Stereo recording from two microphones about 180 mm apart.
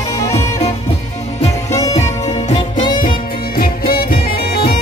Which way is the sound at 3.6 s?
55° left (ahead or behind).